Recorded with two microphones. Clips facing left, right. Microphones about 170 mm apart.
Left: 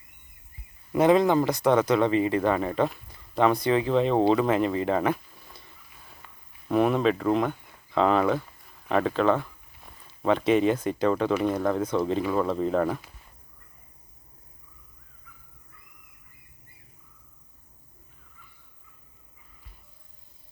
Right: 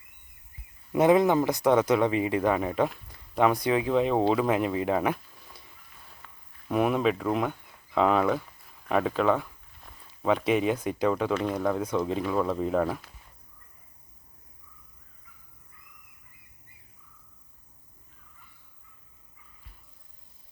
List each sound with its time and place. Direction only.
0.9 s speech: 5° right (ahead or behind)
1.5 s speech: 20° right (ahead or behind); by 5.5 s centre (ahead or behind)
6.1 s a sound: centre (ahead or behind)
11.3 s speech: 5° left (ahead or behind)